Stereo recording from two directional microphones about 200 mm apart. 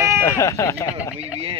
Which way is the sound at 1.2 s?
30° right (ahead or behind).